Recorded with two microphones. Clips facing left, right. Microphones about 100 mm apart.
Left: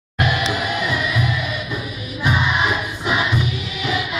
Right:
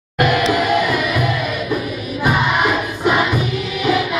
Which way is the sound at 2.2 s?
50° right (ahead or behind).